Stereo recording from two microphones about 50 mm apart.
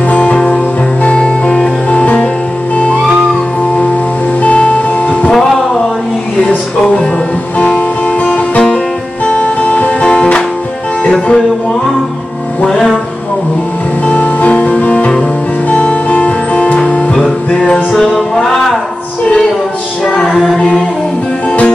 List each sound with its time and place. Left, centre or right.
0.1 s music: left
4.4 s music: left
7.5 s music: left
12.6 s music: centre
14.0 s music: left
17.9 s music: centre
20.5 s a capella: centre
21.5 s music: left